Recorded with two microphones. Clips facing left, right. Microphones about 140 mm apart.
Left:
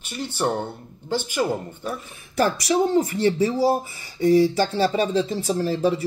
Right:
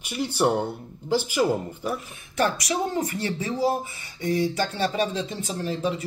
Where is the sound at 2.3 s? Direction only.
30° left (ahead or behind).